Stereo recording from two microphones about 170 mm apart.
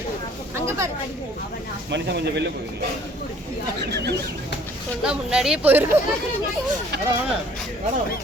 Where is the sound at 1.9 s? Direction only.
85° right.